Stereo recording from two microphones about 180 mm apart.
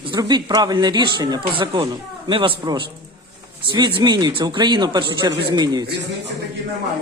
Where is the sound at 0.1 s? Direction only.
25° right (ahead or behind).